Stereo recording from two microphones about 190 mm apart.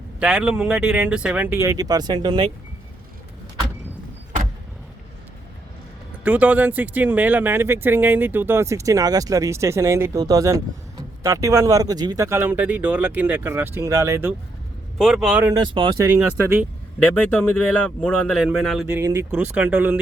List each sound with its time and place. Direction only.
0.2 s speech: 5° right (ahead or behind); by 2.5 s 20° right (ahead or behind)
6.2 s speech: 5° right (ahead or behind)
14.9 s speech: centre (ahead or behind)
15.5 s speech: 25° right (ahead or behind)
16.0 s speech: 10° right (ahead or behind)
17.0 s speech: 5° left (ahead or behind)
18.9 s speech: 15° right (ahead or behind)